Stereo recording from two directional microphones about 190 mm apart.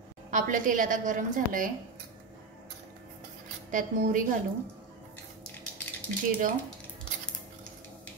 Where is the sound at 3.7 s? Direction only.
45° right (ahead or behind).